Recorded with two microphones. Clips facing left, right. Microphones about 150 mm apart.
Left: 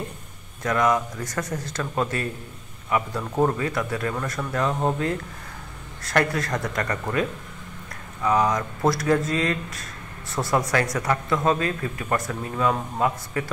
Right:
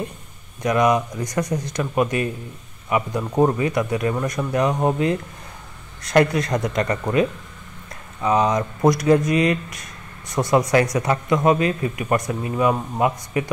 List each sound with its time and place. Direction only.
0.6 s speech: 20° right (ahead or behind)